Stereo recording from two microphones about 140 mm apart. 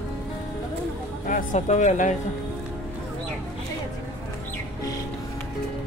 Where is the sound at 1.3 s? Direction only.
70° left (ahead or behind).